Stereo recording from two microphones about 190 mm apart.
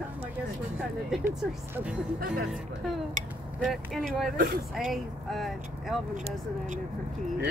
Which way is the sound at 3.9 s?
Centre (ahead or behind).